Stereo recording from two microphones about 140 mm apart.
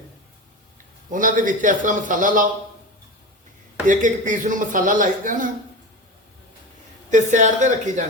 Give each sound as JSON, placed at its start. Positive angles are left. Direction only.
{"t": 1.1, "sound": "speech", "side_deg": -70}
{"t": 3.8, "sound": "speech", "side_deg": -65}
{"t": 7.1, "sound": "speech", "side_deg": -60}